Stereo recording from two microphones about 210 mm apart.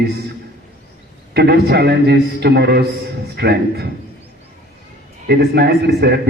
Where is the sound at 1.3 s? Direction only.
50° right (ahead or behind).